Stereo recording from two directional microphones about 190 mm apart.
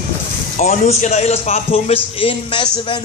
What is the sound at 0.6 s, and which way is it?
A man's voice, 35° left (ahead or behind).